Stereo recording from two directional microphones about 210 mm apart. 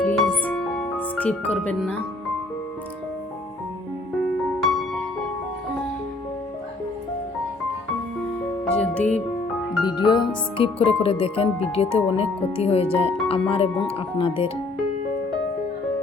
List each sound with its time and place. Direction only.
0.0 s music: 5° left (ahead or behind)
8.6 s music: 5° left (ahead or behind)
9.8 s speech: 20° left (ahead or behind)